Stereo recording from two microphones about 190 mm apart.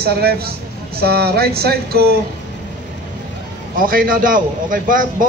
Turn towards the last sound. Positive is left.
turn(degrees=-45)  # may be behind; listen again after turning